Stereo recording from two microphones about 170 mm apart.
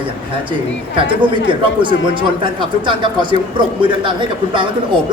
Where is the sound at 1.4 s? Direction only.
30° right (ahead or behind).